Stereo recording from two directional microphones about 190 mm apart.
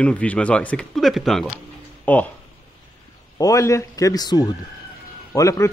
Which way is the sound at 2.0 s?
10° left (ahead or behind).